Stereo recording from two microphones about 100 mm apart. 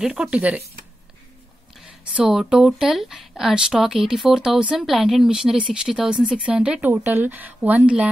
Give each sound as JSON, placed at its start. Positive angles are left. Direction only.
{"t": 0.0, "sound": "speech", "side_deg": -10}
{"t": 1.8, "sound": "speech", "side_deg": -5}
{"t": 6.9, "sound": "speech", "side_deg": -20}